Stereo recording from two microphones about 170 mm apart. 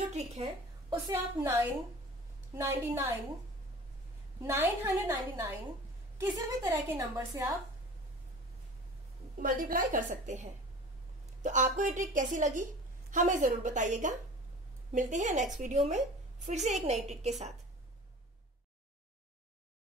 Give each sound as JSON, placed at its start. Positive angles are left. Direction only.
{"t": 0.4, "sound": "a woman's voice", "side_deg": -35}
{"t": 1.1, "sound": "a woman's voice", "side_deg": -10}
{"t": 4.4, "sound": "a woman's voice", "side_deg": -15}
{"t": 9.4, "sound": "a woman's voice", "side_deg": -55}